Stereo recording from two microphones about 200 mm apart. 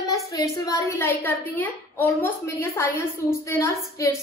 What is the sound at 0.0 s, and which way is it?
A woman's voice, 15° left (ahead or behind).